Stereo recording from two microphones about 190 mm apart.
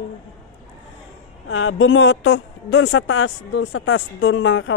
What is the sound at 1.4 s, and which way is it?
Speech, 90° left.